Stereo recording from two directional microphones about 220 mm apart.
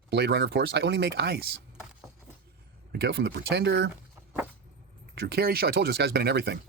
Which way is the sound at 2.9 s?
45° right (ahead or behind).